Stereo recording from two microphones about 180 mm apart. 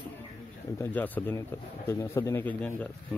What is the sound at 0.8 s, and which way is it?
Speech, 10° left (ahead or behind).